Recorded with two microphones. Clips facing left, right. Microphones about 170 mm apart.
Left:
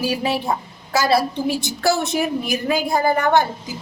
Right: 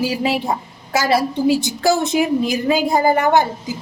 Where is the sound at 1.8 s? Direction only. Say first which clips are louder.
Right 3 dB; 15° right (ahead or behind).